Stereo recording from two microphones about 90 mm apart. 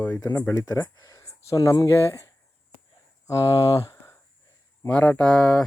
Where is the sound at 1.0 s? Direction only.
40° left (ahead or behind).